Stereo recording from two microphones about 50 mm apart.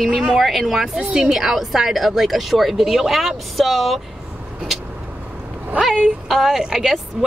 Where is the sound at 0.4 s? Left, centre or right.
Centre.